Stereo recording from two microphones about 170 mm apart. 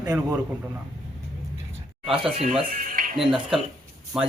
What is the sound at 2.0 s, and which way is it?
Speech, centre (ahead or behind).